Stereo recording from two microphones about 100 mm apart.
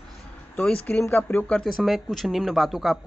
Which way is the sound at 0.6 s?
15° left (ahead or behind).